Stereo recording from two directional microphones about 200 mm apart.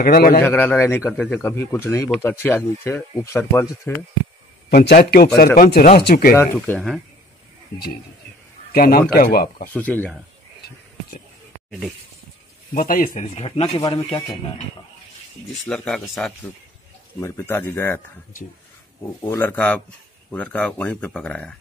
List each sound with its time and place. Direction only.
0.0 s a man's voice: 45° left (ahead or behind)
0.4 s speech: 10° left (ahead or behind)
4.6 s a man's voice: 50° left (ahead or behind)
6.3 s speech: 10° left (ahead or behind)
8.7 s a man's voice: 50° left (ahead or behind)
9.7 s speech: 10° left (ahead or behind)
12.7 s speech: 45° left (ahead or behind); by 14.3 s 25° left (ahead or behind)
15.6 s speech: 5° left (ahead or behind)
19.2 s speech: 10° left (ahead or behind)